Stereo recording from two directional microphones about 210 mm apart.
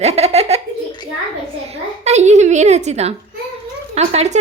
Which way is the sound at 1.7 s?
30° right (ahead or behind).